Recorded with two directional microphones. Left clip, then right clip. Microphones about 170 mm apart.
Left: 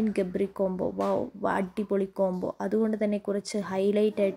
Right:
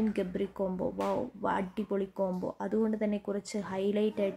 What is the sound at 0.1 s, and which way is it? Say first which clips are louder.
Speech: left 5 dB; 15° left (ahead or behind).